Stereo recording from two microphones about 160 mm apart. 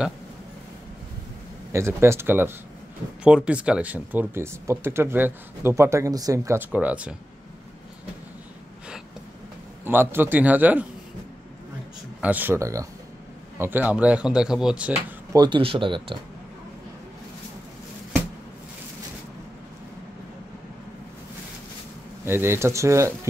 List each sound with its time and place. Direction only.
1.7 s speech: 15° right (ahead or behind)
9.8 s speech: 15° right (ahead or behind)
12.2 s speech: 10° right (ahead or behind)
15.3 s speech: 30° right (ahead or behind)
22.2 s speech: 15° right (ahead or behind)